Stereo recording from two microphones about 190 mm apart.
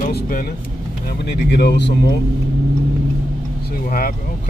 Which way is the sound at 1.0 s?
55° left (ahead or behind).